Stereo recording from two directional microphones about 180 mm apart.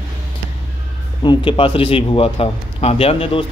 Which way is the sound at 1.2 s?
30° left (ahead or behind).